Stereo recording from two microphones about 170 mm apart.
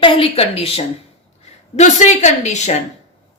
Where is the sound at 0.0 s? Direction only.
35° left (ahead or behind).